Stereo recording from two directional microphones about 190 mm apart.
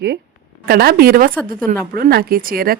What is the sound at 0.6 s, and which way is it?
A woman's voice, 55° right (ahead or behind).